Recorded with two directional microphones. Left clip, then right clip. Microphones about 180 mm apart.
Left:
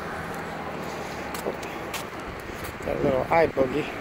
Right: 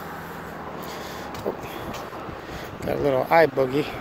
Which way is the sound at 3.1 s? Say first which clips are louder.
Right 4 dB; 45° right (ahead or behind).